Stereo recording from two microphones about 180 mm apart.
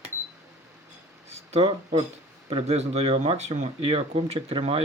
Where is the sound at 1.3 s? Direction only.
35° right (ahead or behind).